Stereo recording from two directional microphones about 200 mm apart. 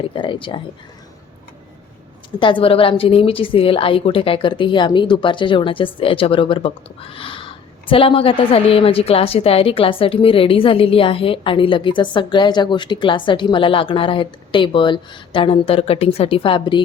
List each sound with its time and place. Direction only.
0.0 s a woman's voice: 25° left (ahead or behind)
2.4 s a woman's voice: 25° left (ahead or behind)